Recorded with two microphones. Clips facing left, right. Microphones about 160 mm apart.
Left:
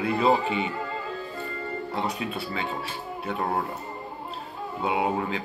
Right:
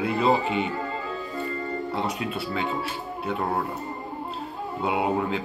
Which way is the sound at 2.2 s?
Centre (ahead or behind).